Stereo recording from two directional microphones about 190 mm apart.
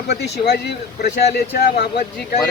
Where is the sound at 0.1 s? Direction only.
60° left (ahead or behind).